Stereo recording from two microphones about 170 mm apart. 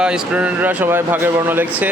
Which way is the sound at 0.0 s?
5° right (ahead or behind).